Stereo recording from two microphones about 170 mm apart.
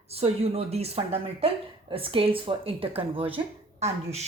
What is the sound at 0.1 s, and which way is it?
Speech, 35° right (ahead or behind).